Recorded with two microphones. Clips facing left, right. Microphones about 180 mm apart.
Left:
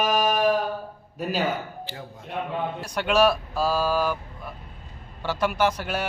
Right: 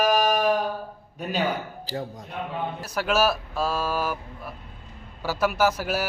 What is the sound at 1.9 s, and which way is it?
Speech, 40° right (ahead or behind).